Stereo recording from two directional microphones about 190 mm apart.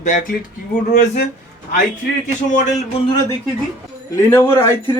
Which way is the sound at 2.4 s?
40° left (ahead or behind).